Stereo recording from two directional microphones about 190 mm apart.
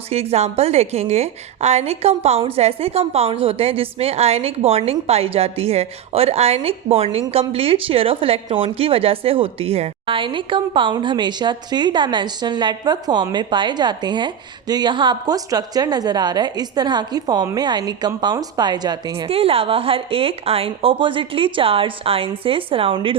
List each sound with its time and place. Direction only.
0.1 s a woman's voice: 35° right (ahead or behind)